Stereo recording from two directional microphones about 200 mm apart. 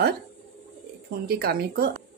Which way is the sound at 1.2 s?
50° right (ahead or behind).